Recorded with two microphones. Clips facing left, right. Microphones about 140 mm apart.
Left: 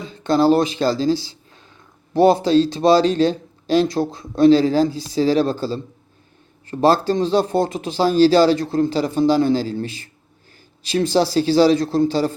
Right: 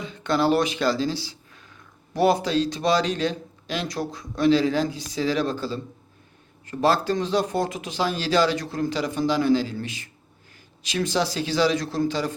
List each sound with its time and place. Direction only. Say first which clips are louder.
0.0 s speech: left 6 dB; 35° left (ahead or behind)